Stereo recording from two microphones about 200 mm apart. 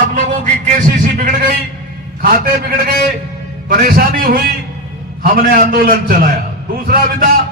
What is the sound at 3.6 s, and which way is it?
Speech, 45° right (ahead or behind).